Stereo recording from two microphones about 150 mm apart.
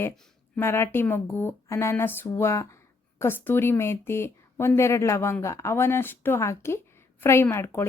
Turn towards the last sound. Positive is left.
turn(degrees=15)  # may be behind; listen again after turning